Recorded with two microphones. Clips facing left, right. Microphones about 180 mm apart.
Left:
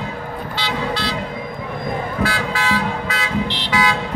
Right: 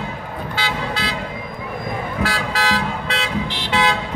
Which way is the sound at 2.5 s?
35° right (ahead or behind).